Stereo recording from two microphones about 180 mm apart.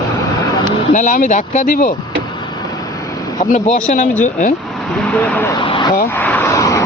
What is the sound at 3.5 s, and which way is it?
Speech, 40° left (ahead or behind).